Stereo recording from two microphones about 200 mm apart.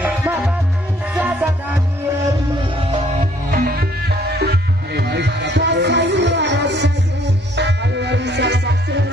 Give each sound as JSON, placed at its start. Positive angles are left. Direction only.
{"t": 0.0, "sound": "music", "side_deg": -15}
{"t": 3.5, "sound": "music", "side_deg": -50}